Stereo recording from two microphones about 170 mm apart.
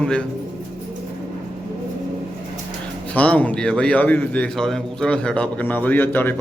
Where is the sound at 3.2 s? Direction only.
10° left (ahead or behind).